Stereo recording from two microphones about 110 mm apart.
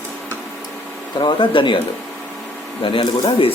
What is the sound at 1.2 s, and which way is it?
Speech, 45° left (ahead or behind).